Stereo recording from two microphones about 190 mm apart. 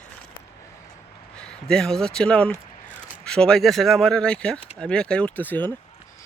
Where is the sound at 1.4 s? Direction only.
5° left (ahead or behind).